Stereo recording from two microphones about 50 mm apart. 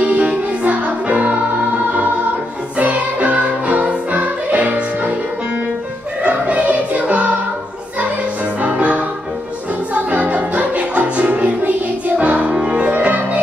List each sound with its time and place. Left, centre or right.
0.0 s music: right
6.2 s music: right
8.5 s music: right
10.1 s music: right